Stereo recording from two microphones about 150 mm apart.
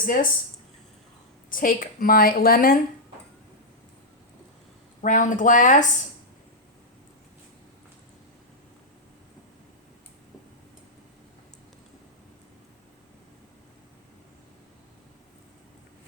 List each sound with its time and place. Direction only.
0.0 s speech: 65° left (ahead or behind)
1.5 s a woman's voice: 65° left (ahead or behind)
5.0 s speech: 60° left (ahead or behind)